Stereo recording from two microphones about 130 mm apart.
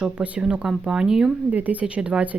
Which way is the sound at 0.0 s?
10° right (ahead or behind).